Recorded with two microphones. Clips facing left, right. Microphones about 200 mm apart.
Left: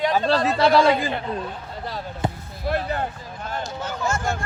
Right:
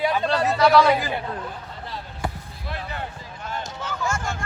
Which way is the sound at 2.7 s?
50° left (ahead or behind).